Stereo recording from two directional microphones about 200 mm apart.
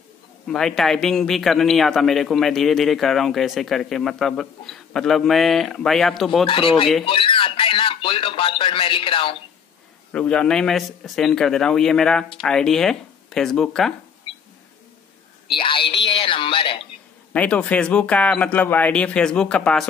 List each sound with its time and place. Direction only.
0.5 s a man's voice: centre (ahead or behind)
6.4 s speech: 25° left (ahead or behind)
10.1 s a man's voice: 5° left (ahead or behind)
15.5 s speech: 25° left (ahead or behind)
17.3 s a man's voice: 5° left (ahead or behind)